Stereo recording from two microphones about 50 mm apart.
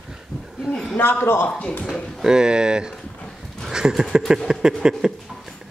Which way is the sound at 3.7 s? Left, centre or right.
Centre.